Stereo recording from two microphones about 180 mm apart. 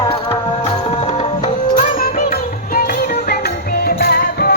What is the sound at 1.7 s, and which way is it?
Music, 50° left (ahead or behind).